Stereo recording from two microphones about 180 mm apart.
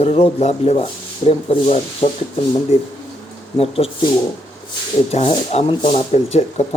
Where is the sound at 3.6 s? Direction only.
35° left (ahead or behind).